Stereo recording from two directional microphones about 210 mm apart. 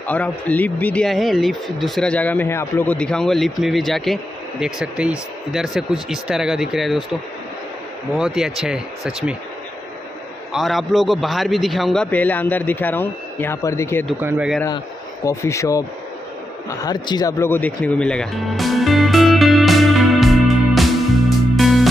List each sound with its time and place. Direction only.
0.0 s speech: 5° left (ahead or behind)
8.1 s speech: centre (ahead or behind)
10.5 s a man's voice: centre (ahead or behind)
14.2 s speech: 5° right (ahead or behind)
15.2 s a man's voice: 15° left (ahead or behind)
16.8 s music: 20° left (ahead or behind); by 21.8 s centre (ahead or behind)